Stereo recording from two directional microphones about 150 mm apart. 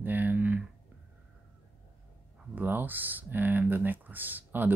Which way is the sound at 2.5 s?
15° right (ahead or behind).